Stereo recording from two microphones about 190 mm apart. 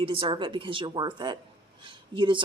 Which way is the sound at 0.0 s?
30° right (ahead or behind).